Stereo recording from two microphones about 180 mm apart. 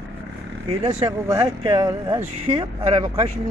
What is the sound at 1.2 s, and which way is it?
Speech, 20° right (ahead or behind).